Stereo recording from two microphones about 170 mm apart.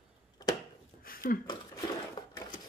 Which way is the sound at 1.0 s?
60° left (ahead or behind).